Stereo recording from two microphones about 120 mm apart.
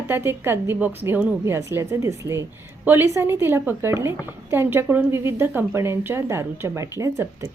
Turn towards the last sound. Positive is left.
turn(degrees=-25)  # may be behind; listen again after turning